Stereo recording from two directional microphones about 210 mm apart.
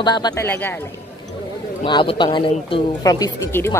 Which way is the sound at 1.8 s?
25° left (ahead or behind).